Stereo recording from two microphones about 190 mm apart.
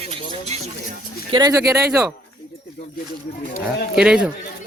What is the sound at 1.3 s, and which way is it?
Speech, 20° right (ahead or behind).